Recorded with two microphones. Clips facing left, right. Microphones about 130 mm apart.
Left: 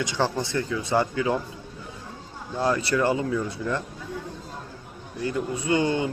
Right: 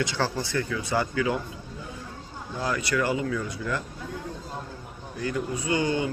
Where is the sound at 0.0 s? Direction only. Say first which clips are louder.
Left 2 dB; 20° left (ahead or behind).